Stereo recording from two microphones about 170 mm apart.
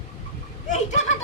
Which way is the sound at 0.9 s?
40° left (ahead or behind).